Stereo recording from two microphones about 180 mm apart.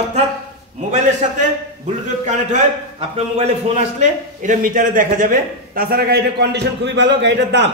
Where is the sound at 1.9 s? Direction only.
40° right (ahead or behind).